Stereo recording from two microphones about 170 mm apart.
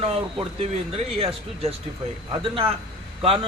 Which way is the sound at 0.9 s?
35° right (ahead or behind).